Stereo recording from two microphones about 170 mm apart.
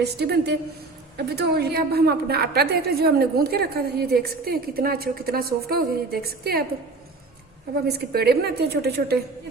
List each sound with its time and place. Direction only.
0.0 s a woman's voice: 75° right (ahead or behind)
7.9 s a woman's voice: 70° right (ahead or behind)